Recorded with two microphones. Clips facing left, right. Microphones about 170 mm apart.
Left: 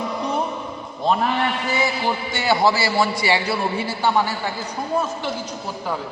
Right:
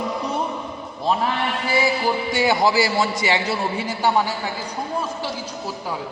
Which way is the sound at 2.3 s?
15° right (ahead or behind).